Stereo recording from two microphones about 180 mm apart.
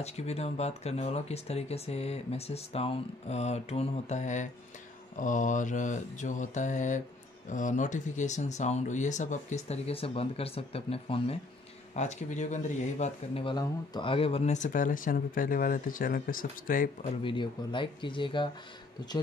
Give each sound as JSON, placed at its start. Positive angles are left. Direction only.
{"t": 0.0, "sound": "speech", "side_deg": 35}
{"t": 17.2, "sound": "speech", "side_deg": 25}